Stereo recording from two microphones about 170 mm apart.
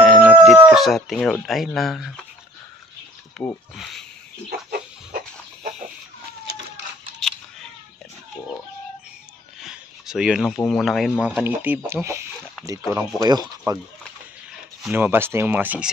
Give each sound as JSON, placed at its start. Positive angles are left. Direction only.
{"t": 0.0, "sound": "music", "side_deg": 0}
{"t": 3.4, "sound": "speech", "side_deg": 0}
{"t": 4.5, "sound": "chicken", "side_deg": -60}
{"t": 7.2, "sound": "a sound", "side_deg": 5}
{"t": 9.6, "sound": "a sound", "side_deg": -5}
{"t": 10.6, "sound": "speech", "side_deg": 0}
{"t": 14.8, "sound": "speech", "side_deg": -10}